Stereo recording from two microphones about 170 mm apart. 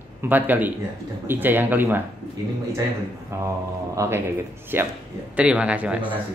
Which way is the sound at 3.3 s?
15° right (ahead or behind).